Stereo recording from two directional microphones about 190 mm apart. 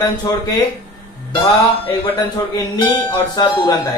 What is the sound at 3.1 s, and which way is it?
Speech, 20° left (ahead or behind).